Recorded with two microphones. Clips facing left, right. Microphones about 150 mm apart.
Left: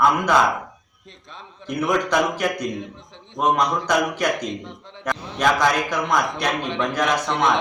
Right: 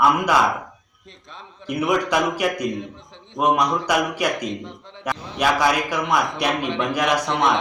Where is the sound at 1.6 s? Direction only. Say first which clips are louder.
Right 1 dB; 5° right (ahead or behind).